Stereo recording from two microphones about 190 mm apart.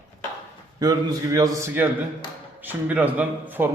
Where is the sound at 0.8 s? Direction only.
20° right (ahead or behind).